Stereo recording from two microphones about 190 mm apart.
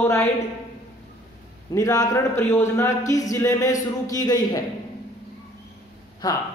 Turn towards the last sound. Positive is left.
turn(degrees=20)  # may be behind; listen again after turning